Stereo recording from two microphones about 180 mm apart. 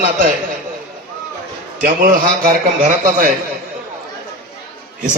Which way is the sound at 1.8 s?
50° right (ahead or behind).